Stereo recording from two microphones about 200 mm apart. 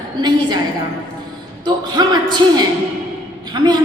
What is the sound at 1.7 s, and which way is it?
A woman's voice, 20° right (ahead or behind).